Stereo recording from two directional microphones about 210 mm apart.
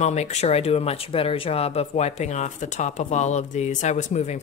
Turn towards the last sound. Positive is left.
turn(degrees=35)  # may be behind; listen again after turning